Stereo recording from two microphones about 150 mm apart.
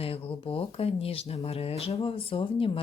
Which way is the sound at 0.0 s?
40° left (ahead or behind).